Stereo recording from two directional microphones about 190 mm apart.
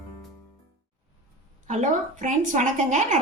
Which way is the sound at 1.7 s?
40° right (ahead or behind).